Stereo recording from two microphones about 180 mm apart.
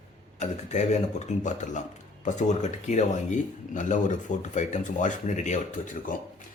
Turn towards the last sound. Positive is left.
turn(degrees=45)  # may be behind; listen again after turning